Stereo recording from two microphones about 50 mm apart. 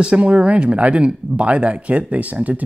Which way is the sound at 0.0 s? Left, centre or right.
Right.